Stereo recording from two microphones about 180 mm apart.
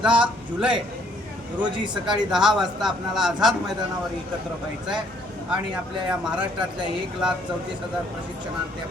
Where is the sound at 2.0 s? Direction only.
5° right (ahead or behind).